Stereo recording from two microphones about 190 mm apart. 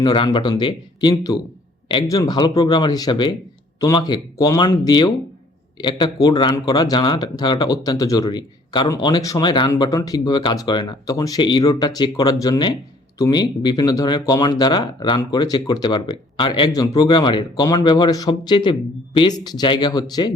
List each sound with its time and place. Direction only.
0.0 s a man's voice: 25° left (ahead or behind)